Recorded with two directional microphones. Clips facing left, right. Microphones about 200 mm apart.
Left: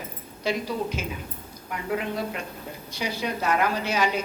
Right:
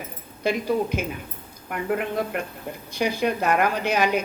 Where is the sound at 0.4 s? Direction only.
55° right (ahead or behind).